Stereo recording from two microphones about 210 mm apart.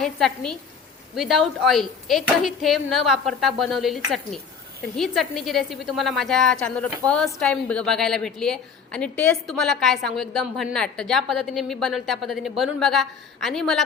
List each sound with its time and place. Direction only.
0.0 s a woman's voice: centre (ahead or behind)